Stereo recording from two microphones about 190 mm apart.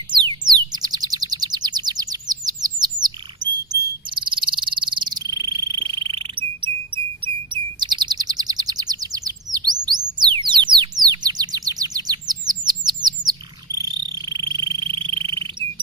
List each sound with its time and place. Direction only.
0.2 s a sound: 20° right (ahead or behind)
0.7 s bird: 20° right (ahead or behind)
4.1 s frog: 25° right (ahead or behind)
10.8 s chirp: 20° right (ahead or behind)
14.1 s frog: 25° right (ahead or behind)